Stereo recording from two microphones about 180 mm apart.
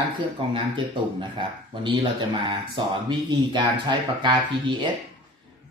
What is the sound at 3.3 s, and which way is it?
Speech, 25° right (ahead or behind).